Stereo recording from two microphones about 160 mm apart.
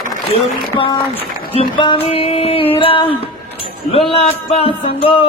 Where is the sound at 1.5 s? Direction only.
30° left (ahead or behind).